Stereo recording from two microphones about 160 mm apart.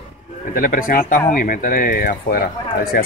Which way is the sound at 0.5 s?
60° left (ahead or behind).